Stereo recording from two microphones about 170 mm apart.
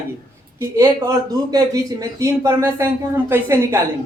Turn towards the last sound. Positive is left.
turn(degrees=-15)  # may be behind; listen again after turning